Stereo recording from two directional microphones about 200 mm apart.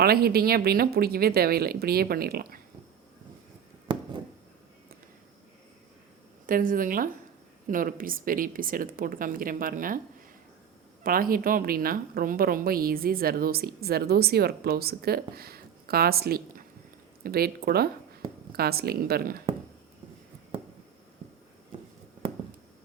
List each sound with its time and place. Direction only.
0.0 s speech: 50° right (ahead or behind)
6.4 s speech: 45° right (ahead or behind)
11.0 s speech: 45° right (ahead or behind)